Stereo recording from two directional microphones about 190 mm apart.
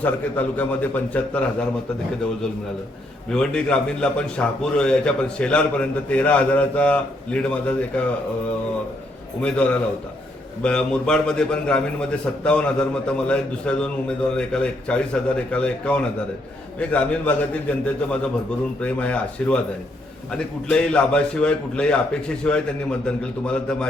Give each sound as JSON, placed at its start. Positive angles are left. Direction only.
{"t": 0.0, "sound": "a man's voice", "side_deg": 10}
{"t": 3.2, "sound": "a man's voice", "side_deg": 5}
{"t": 9.4, "sound": "a man's voice", "side_deg": 5}